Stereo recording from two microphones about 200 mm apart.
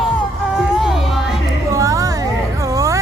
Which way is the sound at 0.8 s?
Centre (ahead or behind).